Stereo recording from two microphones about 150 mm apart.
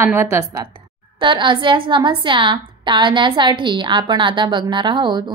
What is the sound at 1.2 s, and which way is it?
A woman's voice, 30° right (ahead or behind).